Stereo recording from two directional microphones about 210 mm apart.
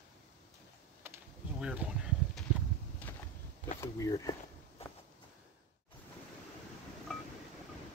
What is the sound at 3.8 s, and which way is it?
Speech, 15° left (ahead or behind).